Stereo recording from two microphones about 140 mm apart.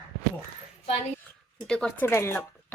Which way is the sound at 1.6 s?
5° left (ahead or behind).